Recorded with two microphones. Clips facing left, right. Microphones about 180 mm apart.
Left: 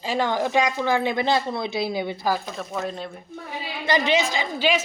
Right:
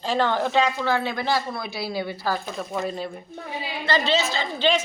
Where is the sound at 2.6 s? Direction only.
Centre (ahead or behind).